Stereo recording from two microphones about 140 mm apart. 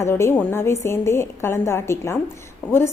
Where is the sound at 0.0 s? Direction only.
20° left (ahead or behind).